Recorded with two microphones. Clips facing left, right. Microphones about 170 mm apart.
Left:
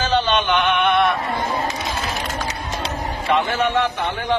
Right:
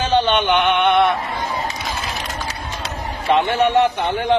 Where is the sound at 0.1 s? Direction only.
20° right (ahead or behind).